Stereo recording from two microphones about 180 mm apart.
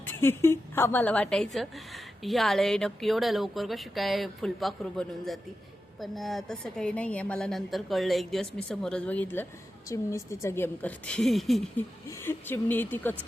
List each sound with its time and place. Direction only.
0.0 s a woman's voice: 15° left (ahead or behind)
12.2 s speech: 10° left (ahead or behind)